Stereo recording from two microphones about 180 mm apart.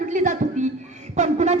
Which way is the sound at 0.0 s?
45° right (ahead or behind).